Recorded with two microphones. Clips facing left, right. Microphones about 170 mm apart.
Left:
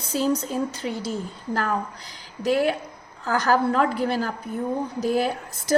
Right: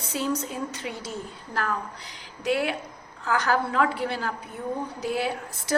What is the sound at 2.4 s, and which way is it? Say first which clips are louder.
A woman's voice: left 4 dB; 40° left (ahead or behind).